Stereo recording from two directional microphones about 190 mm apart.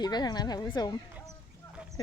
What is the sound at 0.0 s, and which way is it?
Speech, 20° left (ahead or behind).